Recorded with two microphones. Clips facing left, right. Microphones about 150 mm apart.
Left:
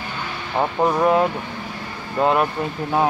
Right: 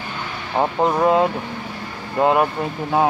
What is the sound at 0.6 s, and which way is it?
Speech, 15° right (ahead or behind).